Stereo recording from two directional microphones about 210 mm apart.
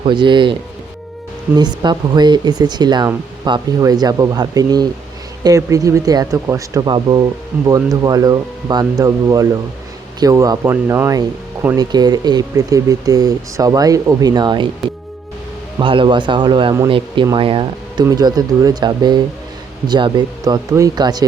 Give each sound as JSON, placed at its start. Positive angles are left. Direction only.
{"t": 0.0, "sound": "speech", "side_deg": -25}
{"t": 1.5, "sound": "speech", "side_deg": -20}
{"t": 15.8, "sound": "speech", "side_deg": -25}